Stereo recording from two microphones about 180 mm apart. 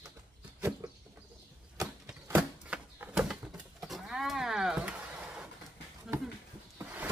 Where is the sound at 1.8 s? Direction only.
15° right (ahead or behind).